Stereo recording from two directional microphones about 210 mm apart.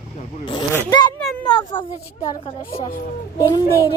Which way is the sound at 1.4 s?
20° left (ahead or behind).